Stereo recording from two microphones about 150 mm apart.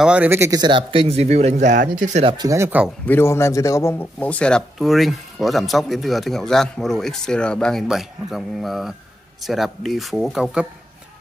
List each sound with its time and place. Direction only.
0.0 s speech: 10° right (ahead or behind)
0.6 s speech: 30° right (ahead or behind); by 2.2 s 55° right (ahead or behind)
2.2 s speech: 25° right (ahead or behind)
3.1 s speech: 15° left (ahead or behind); by 10.7 s 5° right (ahead or behind)